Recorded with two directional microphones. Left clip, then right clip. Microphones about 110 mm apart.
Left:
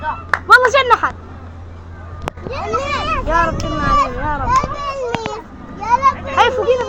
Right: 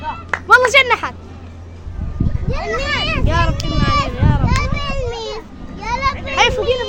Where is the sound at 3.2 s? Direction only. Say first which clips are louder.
Left 3 dB; 25° right (ahead or behind).